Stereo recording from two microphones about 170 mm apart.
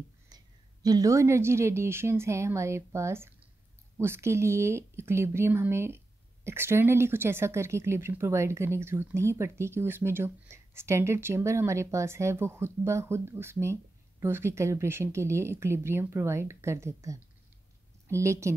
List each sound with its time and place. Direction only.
0.8 s a woman's voice: 20° right (ahead or behind)